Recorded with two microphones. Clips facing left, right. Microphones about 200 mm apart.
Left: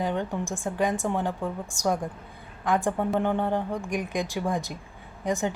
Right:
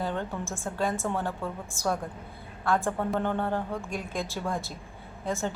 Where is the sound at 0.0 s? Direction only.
15° left (ahead or behind).